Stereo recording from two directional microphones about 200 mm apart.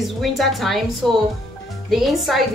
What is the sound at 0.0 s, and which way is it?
A woman's voice, centre (ahead or behind).